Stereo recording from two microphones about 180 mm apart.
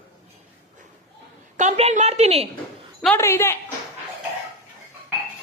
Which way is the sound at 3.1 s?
15° left (ahead or behind).